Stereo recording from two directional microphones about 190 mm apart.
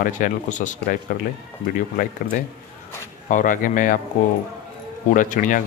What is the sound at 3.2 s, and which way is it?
Speech, 45° left (ahead or behind).